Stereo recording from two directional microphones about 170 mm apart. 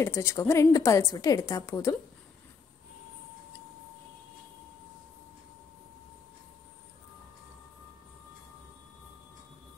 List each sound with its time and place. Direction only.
0.0 s a woman's voice: 15° left (ahead or behind)